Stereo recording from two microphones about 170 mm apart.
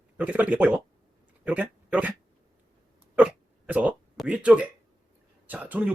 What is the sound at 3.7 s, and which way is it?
Speech, 10° right (ahead or behind).